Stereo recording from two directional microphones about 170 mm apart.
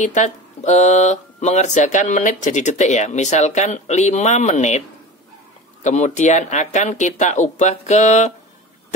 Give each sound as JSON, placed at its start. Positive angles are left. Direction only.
{"t": 0.0, "sound": "speech", "side_deg": 45}
{"t": 5.9, "sound": "speech", "side_deg": 45}